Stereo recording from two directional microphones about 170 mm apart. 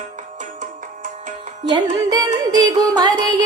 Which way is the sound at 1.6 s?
25° right (ahead or behind).